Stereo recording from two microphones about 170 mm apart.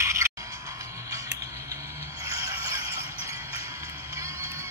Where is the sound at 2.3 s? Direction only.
20° right (ahead or behind).